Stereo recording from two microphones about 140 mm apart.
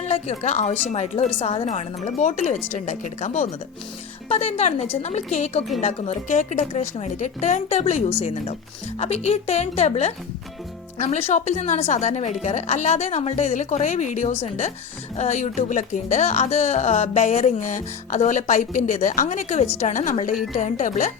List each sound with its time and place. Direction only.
0.1 s a woman's voice: 50° left (ahead or behind)